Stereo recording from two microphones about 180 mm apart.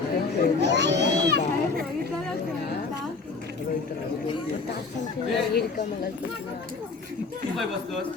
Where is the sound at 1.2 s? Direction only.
70° right (ahead or behind).